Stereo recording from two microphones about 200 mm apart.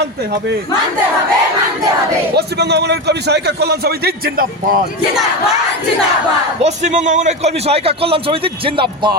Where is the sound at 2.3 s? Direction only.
55° right (ahead or behind).